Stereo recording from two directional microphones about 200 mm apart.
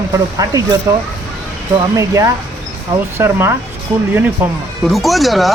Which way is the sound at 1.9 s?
15° right (ahead or behind).